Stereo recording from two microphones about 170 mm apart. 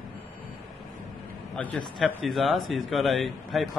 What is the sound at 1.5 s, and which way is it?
A man's voice, 10° left (ahead or behind).